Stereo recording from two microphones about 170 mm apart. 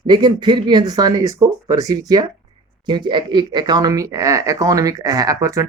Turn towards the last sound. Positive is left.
turn(degrees=-20)  # may be behind; listen again after turning